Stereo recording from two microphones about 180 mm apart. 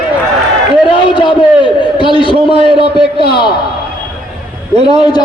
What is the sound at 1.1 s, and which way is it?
A man's voice, 25° left (ahead or behind).